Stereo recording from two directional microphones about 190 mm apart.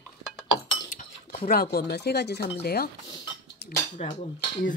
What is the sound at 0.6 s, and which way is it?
Cutlery, 40° left (ahead or behind).